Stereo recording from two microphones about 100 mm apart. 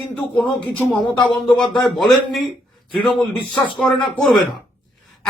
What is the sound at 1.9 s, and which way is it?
Speech, centre (ahead or behind).